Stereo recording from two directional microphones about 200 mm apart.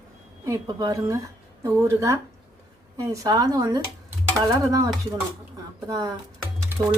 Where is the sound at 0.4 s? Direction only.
15° right (ahead or behind).